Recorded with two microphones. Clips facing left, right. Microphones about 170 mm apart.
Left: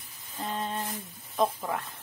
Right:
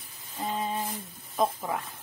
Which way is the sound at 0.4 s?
10° right (ahead or behind).